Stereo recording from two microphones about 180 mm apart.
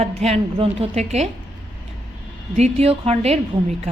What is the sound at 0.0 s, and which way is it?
A woman's voice, 35° right (ahead or behind).